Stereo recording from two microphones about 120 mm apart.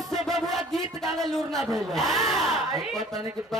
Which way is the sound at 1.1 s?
Centre (ahead or behind).